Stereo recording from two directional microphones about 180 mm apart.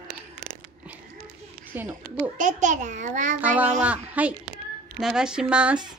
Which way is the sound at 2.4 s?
45° right (ahead or behind).